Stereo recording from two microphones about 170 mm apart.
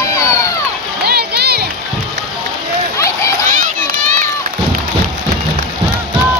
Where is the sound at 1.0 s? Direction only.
70° right (ahead or behind).